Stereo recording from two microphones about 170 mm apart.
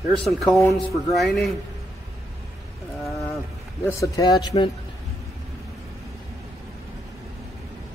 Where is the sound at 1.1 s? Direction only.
Centre (ahead or behind).